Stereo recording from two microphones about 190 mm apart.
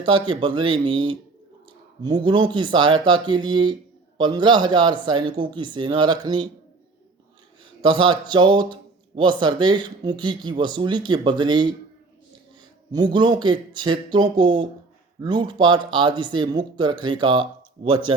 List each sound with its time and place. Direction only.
0.0 s speech: 25° right (ahead or behind)
7.6 s speech: 25° right (ahead or behind)
12.9 s speech: 25° right (ahead or behind)